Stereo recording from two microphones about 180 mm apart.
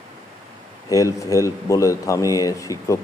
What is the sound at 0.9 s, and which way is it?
Speech, 20° left (ahead or behind).